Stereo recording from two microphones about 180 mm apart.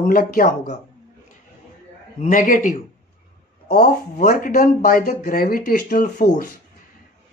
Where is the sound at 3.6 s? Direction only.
60° left (ahead or behind).